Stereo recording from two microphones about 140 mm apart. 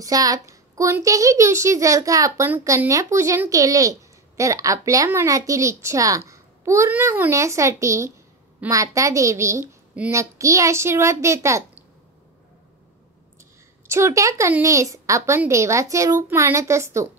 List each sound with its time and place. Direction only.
0.0 s a child's voice: 25° right (ahead or behind)
13.8 s a child's voice: 20° right (ahead or behind)